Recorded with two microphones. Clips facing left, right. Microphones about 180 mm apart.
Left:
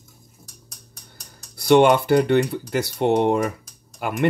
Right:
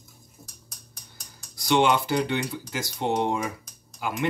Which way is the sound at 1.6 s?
55° left (ahead or behind).